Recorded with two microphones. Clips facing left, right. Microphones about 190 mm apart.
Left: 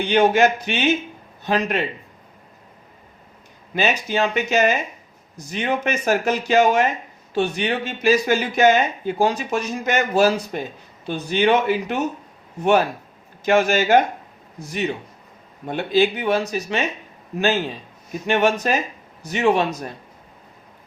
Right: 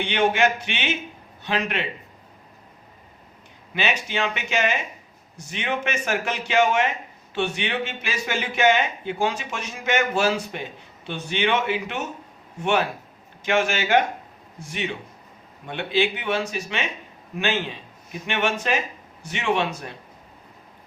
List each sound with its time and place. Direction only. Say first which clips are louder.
0.0 s speech: left 5 dB; 40° left (ahead or behind)
3.8 s speech: left 5 dB; 40° left (ahead or behind)
13.4 s speech: left 5 dB; 40° left (ahead or behind)